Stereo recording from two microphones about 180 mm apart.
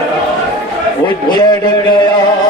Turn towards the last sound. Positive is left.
turn(degrees=25)  # may be behind; listen again after turning